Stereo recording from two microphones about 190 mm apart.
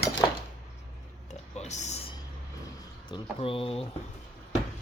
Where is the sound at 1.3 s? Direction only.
35° left (ahead or behind).